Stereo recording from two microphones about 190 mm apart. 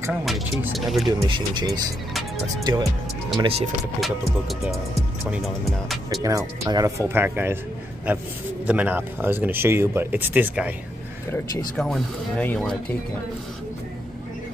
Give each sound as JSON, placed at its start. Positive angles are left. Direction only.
{"t": 0.2, "sound": "speech", "side_deg": 0}
{"t": 1.2, "sound": "speech", "side_deg": -25}
{"t": 3.3, "sound": "speech", "side_deg": -30}
{"t": 4.0, "sound": "speech", "side_deg": 0}
{"t": 6.2, "sound": "speech", "side_deg": -15}
{"t": 8.6, "sound": "speech", "side_deg": -10}
{"t": 11.7, "sound": "speech", "side_deg": 5}